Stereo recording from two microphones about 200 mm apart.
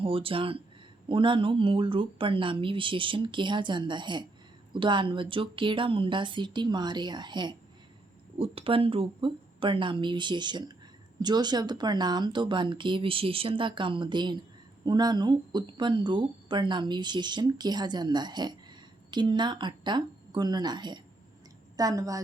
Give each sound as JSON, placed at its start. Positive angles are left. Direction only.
{"t": 0.0, "sound": "a woman's voice", "side_deg": -25}